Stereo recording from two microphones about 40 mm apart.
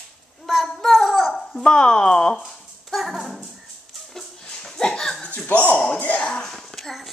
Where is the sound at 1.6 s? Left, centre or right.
Left.